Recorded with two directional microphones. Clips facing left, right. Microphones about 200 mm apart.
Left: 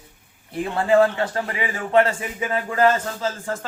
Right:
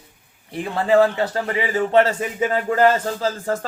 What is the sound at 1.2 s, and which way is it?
A man's voice, 35° right (ahead or behind).